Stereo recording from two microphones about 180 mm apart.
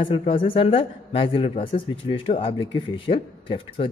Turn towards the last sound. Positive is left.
turn(degrees=30)  # may be behind; listen again after turning